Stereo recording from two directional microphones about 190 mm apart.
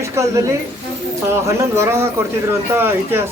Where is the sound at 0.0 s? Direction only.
15° right (ahead or behind).